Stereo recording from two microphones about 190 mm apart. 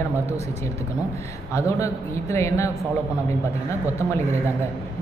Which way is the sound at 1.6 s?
15° left (ahead or behind).